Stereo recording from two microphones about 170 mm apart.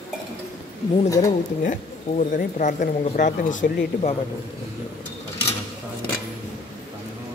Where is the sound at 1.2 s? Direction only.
45° left (ahead or behind).